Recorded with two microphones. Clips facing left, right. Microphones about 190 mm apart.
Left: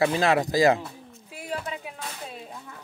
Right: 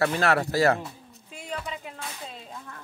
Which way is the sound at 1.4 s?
5° left (ahead or behind).